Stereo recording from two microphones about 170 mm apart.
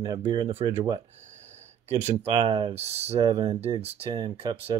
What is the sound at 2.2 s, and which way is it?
Speech, 30° right (ahead or behind).